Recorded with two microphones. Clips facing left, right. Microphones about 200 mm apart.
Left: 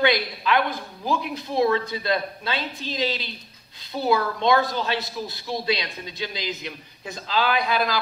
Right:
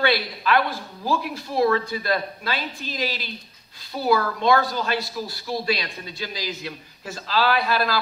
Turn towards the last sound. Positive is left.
turn(degrees=15)  # may be behind; listen again after turning